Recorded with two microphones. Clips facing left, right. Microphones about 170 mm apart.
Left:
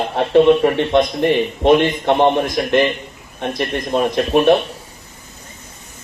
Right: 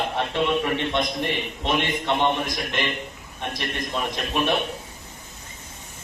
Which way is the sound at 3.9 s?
60° left (ahead or behind).